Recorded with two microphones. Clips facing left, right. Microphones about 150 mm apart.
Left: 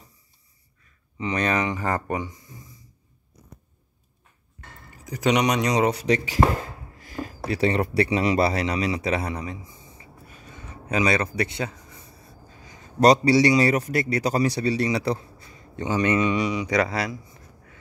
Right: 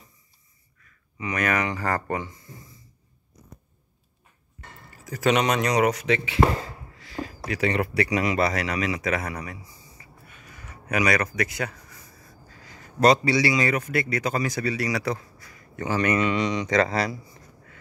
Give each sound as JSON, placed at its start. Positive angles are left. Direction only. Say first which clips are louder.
{"t": 1.1, "sound": "speech", "louder": "left 1 dB", "side_deg": 30}
{"t": 4.9, "sound": "speech", "louder": "even", "side_deg": 15}
{"t": 5.9, "sound": "speech", "louder": "left 1 dB", "side_deg": 35}
{"t": 7.0, "sound": "a sound", "louder": "left 1 dB", "side_deg": 45}
{"t": 7.5, "sound": "speech", "louder": "left 2 dB", "side_deg": 35}
{"t": 10.2, "sound": "a sound", "louder": "left 4 dB", "side_deg": 35}
{"t": 13.0, "sound": "speech", "louder": "left 3 dB", "side_deg": 35}